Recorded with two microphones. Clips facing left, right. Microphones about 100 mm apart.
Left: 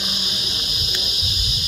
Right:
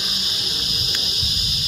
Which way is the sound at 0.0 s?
15° left (ahead or behind).